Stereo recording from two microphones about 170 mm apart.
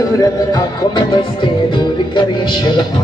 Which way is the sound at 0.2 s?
25° left (ahead or behind).